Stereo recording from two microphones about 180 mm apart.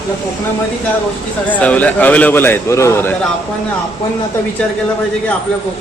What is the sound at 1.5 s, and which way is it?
A man's voice, 10° left (ahead or behind).